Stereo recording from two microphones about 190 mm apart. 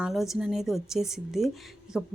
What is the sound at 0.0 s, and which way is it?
A woman's voice, centre (ahead or behind).